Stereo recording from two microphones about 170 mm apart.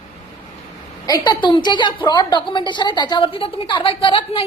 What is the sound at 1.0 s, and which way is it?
A woman's voice, 25° left (ahead or behind).